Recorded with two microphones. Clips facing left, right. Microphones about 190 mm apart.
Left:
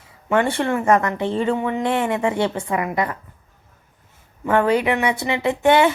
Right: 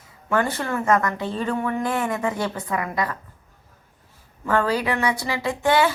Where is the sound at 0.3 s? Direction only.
25° left (ahead or behind).